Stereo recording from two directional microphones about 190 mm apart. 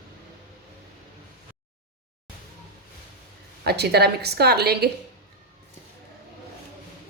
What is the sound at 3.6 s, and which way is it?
A woman's voice, 60° right (ahead or behind).